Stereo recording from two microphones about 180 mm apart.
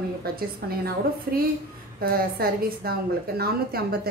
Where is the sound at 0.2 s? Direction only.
55° right (ahead or behind).